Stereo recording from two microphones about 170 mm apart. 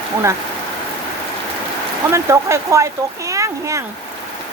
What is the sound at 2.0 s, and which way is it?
Speech, 15° right (ahead or behind).